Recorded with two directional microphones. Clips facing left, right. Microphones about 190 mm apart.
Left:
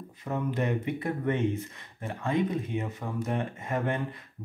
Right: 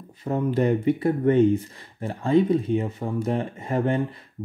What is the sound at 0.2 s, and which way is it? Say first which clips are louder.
Speech: right 7 dB; 30° right (ahead or behind).